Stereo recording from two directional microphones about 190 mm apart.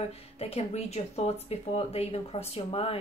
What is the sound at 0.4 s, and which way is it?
A woman's voice, 30° left (ahead or behind).